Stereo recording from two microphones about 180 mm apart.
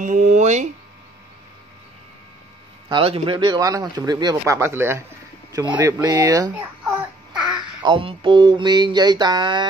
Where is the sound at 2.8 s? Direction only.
30° right (ahead or behind).